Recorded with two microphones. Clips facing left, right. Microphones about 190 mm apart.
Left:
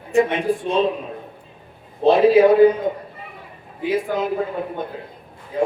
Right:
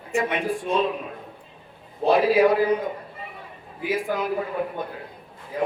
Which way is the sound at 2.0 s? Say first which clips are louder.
Left 5 dB; 25° left (ahead or behind).